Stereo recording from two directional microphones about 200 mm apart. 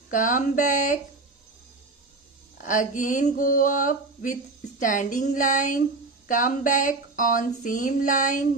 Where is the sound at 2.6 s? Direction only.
40° left (ahead or behind).